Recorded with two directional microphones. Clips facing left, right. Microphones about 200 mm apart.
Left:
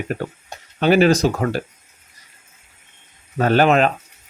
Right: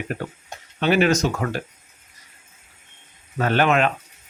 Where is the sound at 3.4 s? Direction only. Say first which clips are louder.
Left 4 dB; 35° left (ahead or behind).